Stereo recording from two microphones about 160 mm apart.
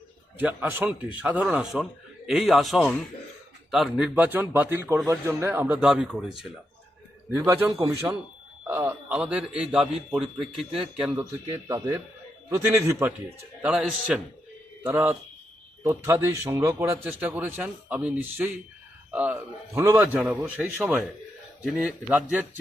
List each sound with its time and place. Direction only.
0.3 s a man's voice: 10° right (ahead or behind)
7.3 s a man's voice: 15° right (ahead or behind)
12.6 s a man's voice: 15° right (ahead or behind)